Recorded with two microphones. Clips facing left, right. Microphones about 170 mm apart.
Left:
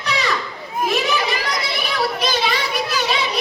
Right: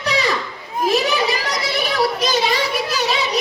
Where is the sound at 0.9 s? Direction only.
35° right (ahead or behind).